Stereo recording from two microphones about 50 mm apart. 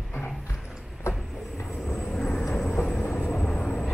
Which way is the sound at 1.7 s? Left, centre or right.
Centre.